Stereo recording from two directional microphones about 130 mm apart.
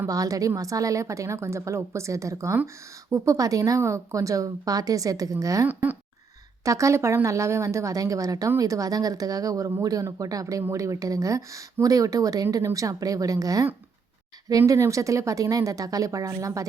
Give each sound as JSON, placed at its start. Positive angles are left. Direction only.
{"t": 0.1, "sound": "a woman's voice", "side_deg": -25}
{"t": 5.6, "sound": "speech", "side_deg": -15}
{"t": 6.7, "sound": "a woman's voice", "side_deg": -25}
{"t": 14.7, "sound": "a woman's voice", "side_deg": -25}